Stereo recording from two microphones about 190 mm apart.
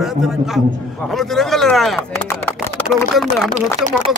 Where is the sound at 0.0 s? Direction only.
Centre (ahead or behind).